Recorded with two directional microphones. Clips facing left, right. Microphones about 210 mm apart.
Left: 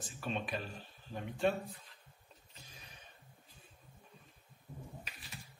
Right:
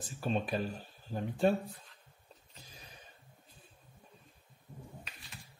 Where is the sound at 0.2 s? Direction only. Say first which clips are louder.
Right 5 dB; 40° right (ahead or behind).